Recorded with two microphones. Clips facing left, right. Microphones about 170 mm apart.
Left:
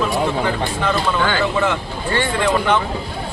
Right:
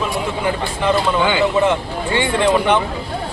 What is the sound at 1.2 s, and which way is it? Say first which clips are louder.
Speech: right 3 dB; 15° right (ahead or behind).